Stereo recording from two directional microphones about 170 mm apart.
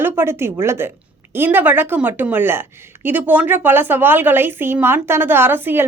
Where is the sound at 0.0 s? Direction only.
15° right (ahead or behind).